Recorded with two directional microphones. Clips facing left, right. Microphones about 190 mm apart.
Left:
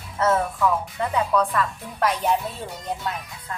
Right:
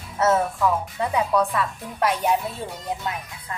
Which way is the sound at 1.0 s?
10° right (ahead or behind).